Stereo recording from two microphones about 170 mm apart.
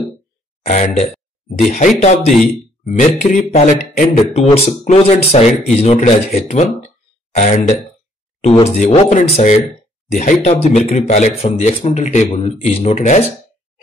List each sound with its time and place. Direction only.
0.7 s speech: 45° left (ahead or behind)